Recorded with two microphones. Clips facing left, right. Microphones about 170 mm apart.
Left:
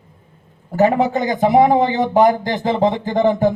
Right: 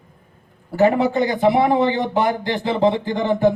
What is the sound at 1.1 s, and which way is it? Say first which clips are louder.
Speech: left 2 dB; 45° left (ahead or behind).